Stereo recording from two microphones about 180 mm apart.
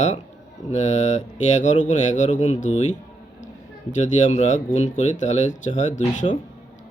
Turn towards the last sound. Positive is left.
turn(degrees=45)  # may be behind; listen again after turning